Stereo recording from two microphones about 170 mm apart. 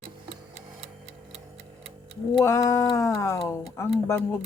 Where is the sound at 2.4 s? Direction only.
20° left (ahead or behind).